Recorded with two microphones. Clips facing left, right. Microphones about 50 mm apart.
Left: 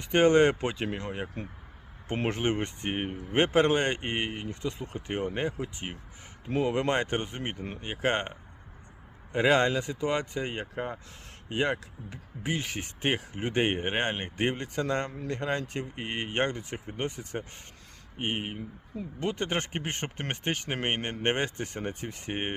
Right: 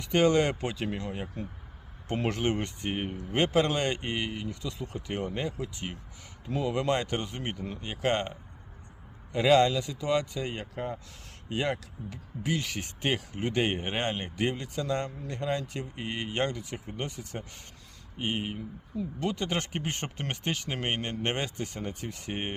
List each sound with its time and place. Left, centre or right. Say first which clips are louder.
0.0 s speech: left 3 dB; left
2.1 s speech: even; left
6.4 s speech: left 2 dB; left